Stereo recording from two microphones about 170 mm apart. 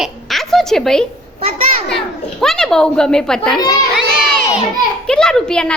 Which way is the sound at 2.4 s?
Centre (ahead or behind).